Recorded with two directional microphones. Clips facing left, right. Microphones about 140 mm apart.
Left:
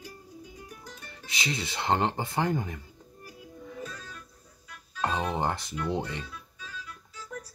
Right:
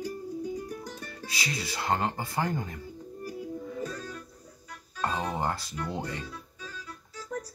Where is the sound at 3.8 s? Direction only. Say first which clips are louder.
Right 5 dB; 35° right (ahead or behind).